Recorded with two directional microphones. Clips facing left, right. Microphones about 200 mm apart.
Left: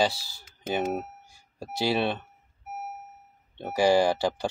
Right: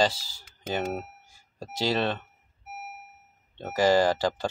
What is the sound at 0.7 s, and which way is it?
Speech, 15° left (ahead or behind).